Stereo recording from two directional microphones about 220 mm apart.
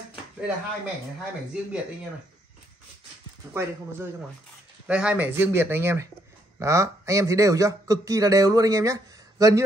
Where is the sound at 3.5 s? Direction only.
10° right (ahead or behind).